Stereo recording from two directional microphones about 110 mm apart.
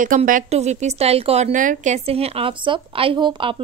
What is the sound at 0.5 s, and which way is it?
A woman's voice, 85° right.